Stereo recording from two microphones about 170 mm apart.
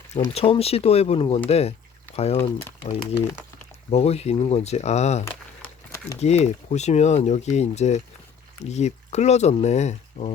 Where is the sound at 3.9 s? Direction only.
40° left (ahead or behind).